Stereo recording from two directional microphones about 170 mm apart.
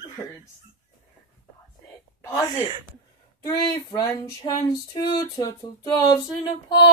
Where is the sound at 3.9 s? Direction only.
25° left (ahead or behind).